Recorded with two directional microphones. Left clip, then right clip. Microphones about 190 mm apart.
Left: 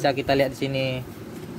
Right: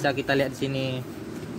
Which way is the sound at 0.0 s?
25° left (ahead or behind).